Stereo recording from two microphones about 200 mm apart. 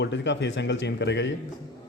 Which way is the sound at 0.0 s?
65° left (ahead or behind).